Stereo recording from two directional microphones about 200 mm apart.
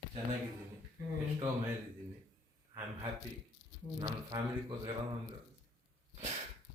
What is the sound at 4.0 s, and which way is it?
Speech, 20° right (ahead or behind).